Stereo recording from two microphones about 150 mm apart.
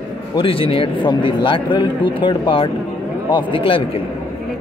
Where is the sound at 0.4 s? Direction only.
35° left (ahead or behind).